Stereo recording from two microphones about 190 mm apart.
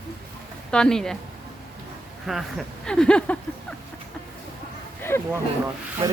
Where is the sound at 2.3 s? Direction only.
Centre (ahead or behind).